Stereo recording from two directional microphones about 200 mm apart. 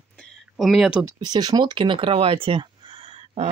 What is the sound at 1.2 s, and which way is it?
Speech, 20° right (ahead or behind).